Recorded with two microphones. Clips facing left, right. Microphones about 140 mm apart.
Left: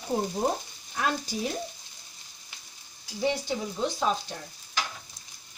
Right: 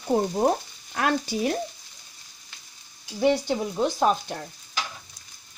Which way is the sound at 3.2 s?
60° right (ahead or behind).